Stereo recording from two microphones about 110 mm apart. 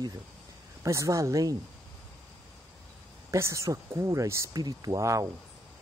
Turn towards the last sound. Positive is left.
turn(degrees=-30)  # may be behind; listen again after turning